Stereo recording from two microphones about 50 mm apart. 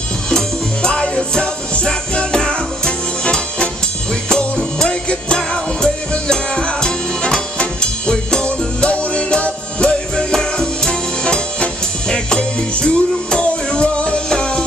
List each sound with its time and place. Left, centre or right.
0.8 s music: centre